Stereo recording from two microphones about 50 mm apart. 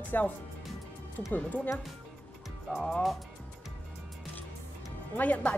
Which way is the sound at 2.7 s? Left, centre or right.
Centre.